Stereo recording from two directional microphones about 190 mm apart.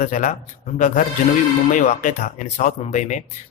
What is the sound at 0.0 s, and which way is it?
Speech, 40° left (ahead or behind).